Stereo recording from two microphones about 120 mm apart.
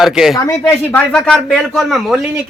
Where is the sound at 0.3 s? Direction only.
20° left (ahead or behind).